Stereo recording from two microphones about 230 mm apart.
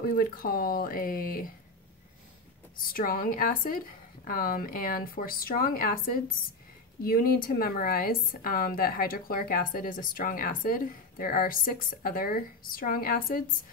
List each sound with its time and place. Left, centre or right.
0.0 s a woman's voice: left
2.9 s a woman's voice: left